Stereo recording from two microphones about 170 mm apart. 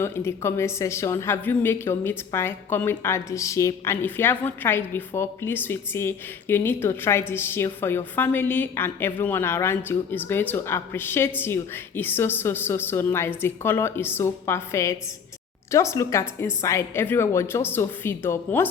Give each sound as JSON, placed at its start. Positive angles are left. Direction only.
{"t": 0.0, "sound": "a woman's voice", "side_deg": 15}